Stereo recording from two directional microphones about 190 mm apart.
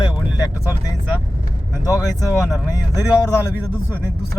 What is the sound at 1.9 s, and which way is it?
Speech, 15° left (ahead or behind).